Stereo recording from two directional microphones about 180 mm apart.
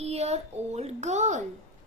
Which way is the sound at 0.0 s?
35° right (ahead or behind).